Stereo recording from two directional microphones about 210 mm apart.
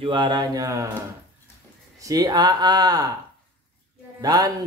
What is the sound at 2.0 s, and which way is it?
Speech, 20° right (ahead or behind).